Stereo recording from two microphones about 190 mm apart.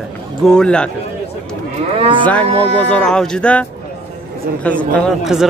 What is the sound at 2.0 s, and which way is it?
Moo, 25° right (ahead or behind).